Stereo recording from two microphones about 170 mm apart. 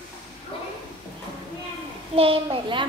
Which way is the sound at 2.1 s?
35° right (ahead or behind).